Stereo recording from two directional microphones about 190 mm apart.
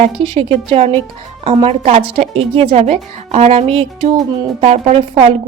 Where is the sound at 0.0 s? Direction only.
30° right (ahead or behind).